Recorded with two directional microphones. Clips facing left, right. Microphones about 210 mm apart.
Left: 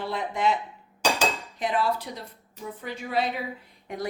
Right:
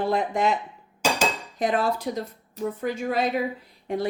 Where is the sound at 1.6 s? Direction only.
45° right (ahead or behind).